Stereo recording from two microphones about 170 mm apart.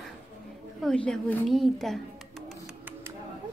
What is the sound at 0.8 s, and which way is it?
A woman's voice, 5° left (ahead or behind).